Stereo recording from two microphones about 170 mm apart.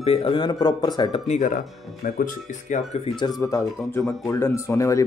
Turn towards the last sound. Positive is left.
turn(degrees=15)  # may be behind; listen again after turning